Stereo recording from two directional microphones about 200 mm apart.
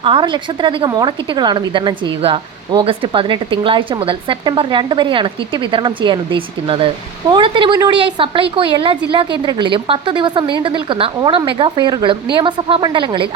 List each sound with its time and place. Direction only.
0.0 s a woman's voice: 25° right (ahead or behind)